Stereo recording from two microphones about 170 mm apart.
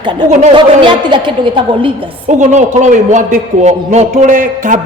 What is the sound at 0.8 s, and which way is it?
Speech, 30° right (ahead or behind).